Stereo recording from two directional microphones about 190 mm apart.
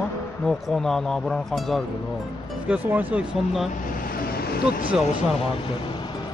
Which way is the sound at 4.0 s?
50° left (ahead or behind).